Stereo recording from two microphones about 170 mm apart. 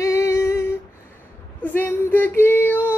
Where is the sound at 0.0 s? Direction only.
15° left (ahead or behind).